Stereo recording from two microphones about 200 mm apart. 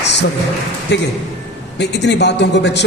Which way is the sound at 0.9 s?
60° left (ahead or behind).